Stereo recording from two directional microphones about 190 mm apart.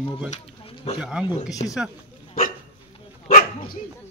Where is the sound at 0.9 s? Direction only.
5° right (ahead or behind).